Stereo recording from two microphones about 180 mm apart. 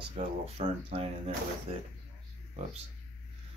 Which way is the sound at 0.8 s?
30° right (ahead or behind).